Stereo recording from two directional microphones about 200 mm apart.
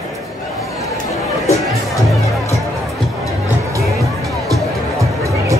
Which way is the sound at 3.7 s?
15° right (ahead or behind).